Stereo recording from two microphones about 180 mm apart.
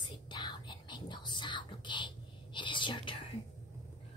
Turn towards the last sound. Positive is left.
turn(degrees=30)  # may be behind; listen again after turning